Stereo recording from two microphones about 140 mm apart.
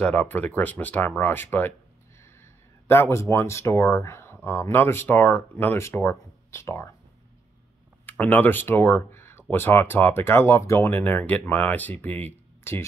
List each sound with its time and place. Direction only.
0.0 s speech: 10° left (ahead or behind)
8.1 s speech: 15° left (ahead or behind)